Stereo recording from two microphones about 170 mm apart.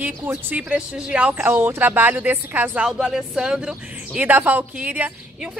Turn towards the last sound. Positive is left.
turn(degrees=-10)  # may be behind; listen again after turning